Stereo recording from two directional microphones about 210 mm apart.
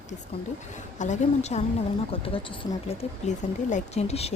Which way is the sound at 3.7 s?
30° left (ahead or behind).